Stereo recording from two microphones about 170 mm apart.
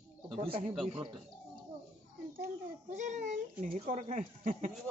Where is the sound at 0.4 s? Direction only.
35° right (ahead or behind).